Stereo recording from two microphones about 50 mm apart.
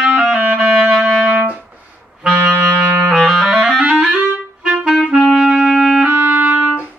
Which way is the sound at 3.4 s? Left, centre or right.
Centre.